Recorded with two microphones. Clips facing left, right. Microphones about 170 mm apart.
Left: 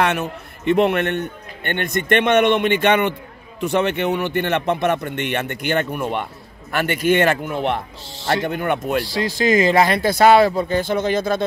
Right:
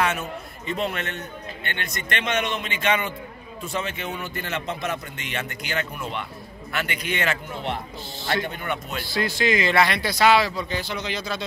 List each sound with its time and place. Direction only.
0.0 s a man's voice: 65° left (ahead or behind)
9.4 s speech: 40° left (ahead or behind)